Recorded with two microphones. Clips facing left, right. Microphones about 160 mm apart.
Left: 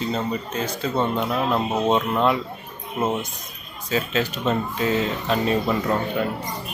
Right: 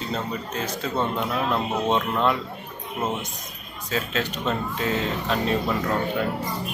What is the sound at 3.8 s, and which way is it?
Speech, 5° left (ahead or behind).